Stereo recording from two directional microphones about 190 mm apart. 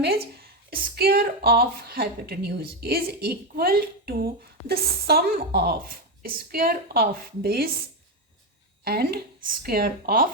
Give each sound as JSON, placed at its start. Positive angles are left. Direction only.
{"t": 0.0, "sound": "a woman's voice", "side_deg": -55}
{"t": 8.8, "sound": "a woman's voice", "side_deg": -55}